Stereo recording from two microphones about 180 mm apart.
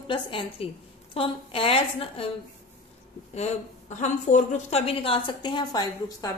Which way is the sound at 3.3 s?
40° left (ahead or behind).